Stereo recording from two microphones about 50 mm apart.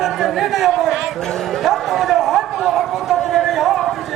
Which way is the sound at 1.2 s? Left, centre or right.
Centre.